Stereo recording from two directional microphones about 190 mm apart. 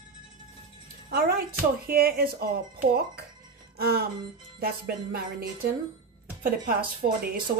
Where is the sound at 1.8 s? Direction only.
50° right (ahead or behind).